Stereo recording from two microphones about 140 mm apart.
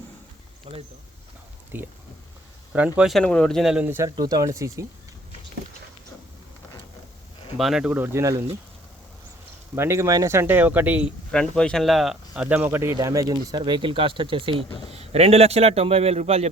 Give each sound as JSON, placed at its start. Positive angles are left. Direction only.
{"t": 0.7, "sound": "speech", "side_deg": -45}
{"t": 1.7, "sound": "speech", "side_deg": -15}
{"t": 3.8, "sound": "speech", "side_deg": -20}
{"t": 7.5, "sound": "speech", "side_deg": 0}
{"t": 9.7, "sound": "speech", "side_deg": -20}
{"t": 11.3, "sound": "speech", "side_deg": 5}
{"t": 12.5, "sound": "speech", "side_deg": -15}